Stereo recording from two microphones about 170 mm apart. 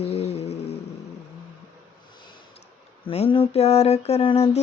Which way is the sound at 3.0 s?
35° left (ahead or behind).